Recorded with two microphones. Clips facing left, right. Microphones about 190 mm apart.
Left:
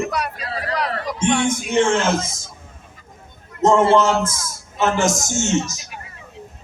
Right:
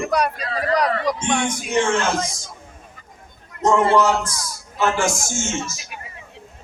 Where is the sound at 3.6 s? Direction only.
20° left (ahead or behind).